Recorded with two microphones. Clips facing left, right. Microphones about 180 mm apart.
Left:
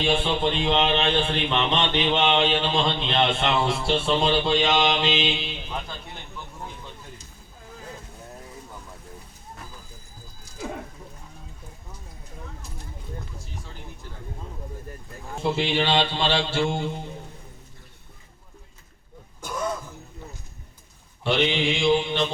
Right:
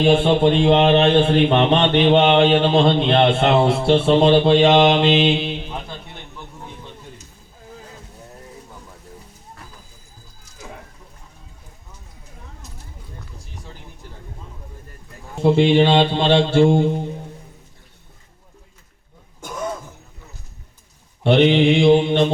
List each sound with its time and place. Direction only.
0.0 s speech: 50° right (ahead or behind)
15.4 s mantra: 50° right (ahead or behind)
19.4 s throat clearing: 25° right (ahead or behind)
21.2 s speech: 60° right (ahead or behind)